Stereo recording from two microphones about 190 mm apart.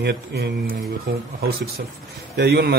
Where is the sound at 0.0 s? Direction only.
55° right (ahead or behind).